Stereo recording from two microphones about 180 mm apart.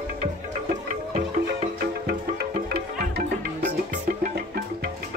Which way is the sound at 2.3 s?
60° right (ahead or behind).